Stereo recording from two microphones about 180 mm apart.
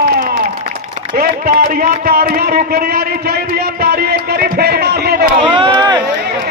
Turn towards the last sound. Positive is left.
turn(degrees=-30)  # may be behind; listen again after turning